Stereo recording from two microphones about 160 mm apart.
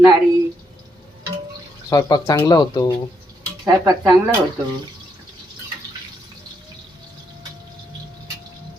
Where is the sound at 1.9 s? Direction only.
25° left (ahead or behind).